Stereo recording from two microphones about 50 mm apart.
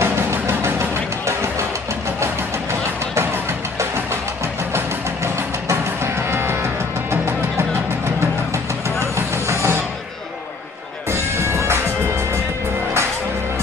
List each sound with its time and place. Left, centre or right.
0.0 s music: right
4.7 s music: right
9.0 s vehicle: right
11.1 s music: right